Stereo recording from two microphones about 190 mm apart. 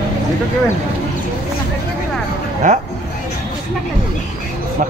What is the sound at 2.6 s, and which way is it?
Speech, 40° right (ahead or behind).